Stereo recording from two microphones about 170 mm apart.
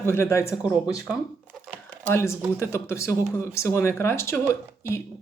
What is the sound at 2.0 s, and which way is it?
Speech, 15° left (ahead or behind).